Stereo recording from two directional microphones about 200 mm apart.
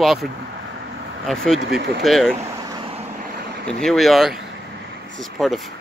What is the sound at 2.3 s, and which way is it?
Vehicle, 15° right (ahead or behind).